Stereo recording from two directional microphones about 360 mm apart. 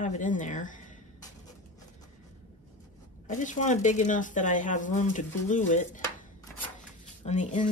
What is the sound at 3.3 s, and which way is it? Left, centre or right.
Speech, left.